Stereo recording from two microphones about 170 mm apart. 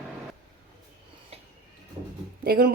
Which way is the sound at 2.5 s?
65° right (ahead or behind).